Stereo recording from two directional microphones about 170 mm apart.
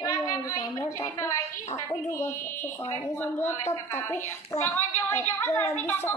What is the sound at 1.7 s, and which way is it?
Speech, 15° left (ahead or behind).